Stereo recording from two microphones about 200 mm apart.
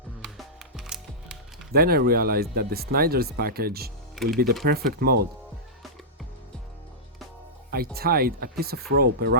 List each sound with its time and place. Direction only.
0.2 s music: 5° right (ahead or behind)
1.7 s speech: 50° right (ahead or behind)
4.1 s speech: centre (ahead or behind)
4.6 s speech: 50° right (ahead or behind)
7.9 s speech: 50° right (ahead or behind)